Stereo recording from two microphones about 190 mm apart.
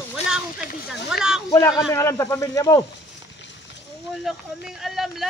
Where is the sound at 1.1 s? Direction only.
5° right (ahead or behind).